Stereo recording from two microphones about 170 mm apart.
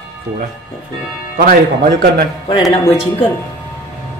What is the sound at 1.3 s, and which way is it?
Speech, 55° right (ahead or behind).